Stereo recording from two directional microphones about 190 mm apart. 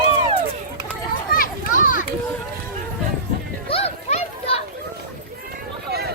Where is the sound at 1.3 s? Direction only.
45° left (ahead or behind).